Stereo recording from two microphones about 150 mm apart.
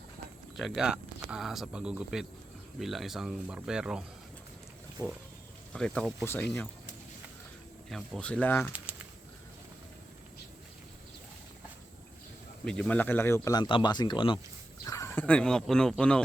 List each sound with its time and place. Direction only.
0.5 s speech: centre (ahead or behind)
6.2 s speech: 15° left (ahead or behind)
7.9 s speech: centre (ahead or behind)
12.6 s speech: 5° left (ahead or behind); by 14.3 s 30° left (ahead or behind)
14.8 s speech: 20° left (ahead or behind)